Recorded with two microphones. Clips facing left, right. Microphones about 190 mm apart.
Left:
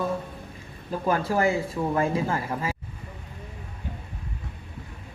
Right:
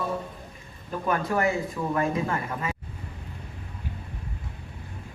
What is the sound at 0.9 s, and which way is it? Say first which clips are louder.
Speech: left 2 dB; 30° left (ahead or behind).